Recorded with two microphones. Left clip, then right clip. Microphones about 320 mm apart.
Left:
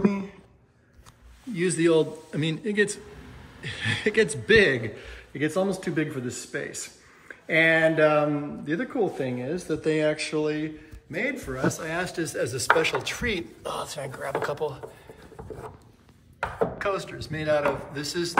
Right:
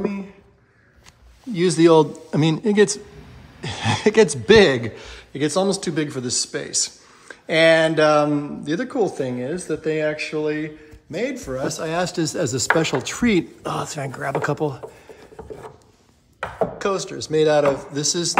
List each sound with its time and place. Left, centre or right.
1.5 s speech: centre
16.5 s speech: centre